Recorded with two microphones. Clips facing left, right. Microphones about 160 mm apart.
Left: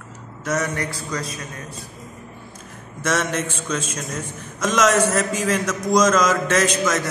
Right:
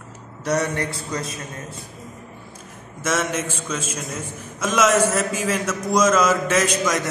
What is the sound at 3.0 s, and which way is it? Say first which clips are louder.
A man's voice: left 1 dB; 5° right (ahead or behind).